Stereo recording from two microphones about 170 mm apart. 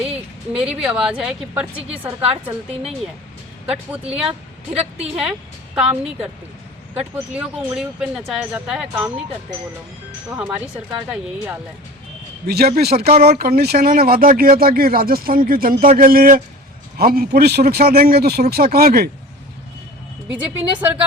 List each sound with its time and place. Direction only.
0.5 s a woman's voice: 5° right (ahead or behind)
4.7 s a woman's voice: 35° right (ahead or behind)
5.7 s a woman's voice: 5° right (ahead or behind)
7.3 s a woman's voice: 5° right (ahead or behind)
11.1 s a woman's voice: 10° right (ahead or behind)
12.5 s speech: 65° right (ahead or behind)
20.3 s a woman's voice: 10° right (ahead or behind)